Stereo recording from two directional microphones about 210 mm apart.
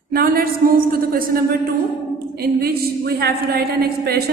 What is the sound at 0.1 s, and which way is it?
A woman's voice, 45° right (ahead or behind).